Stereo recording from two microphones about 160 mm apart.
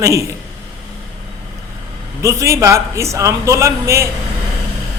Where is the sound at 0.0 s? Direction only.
20° right (ahead or behind).